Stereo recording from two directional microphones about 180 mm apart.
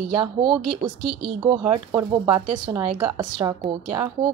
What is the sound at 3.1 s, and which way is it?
Speech, 25° right (ahead or behind).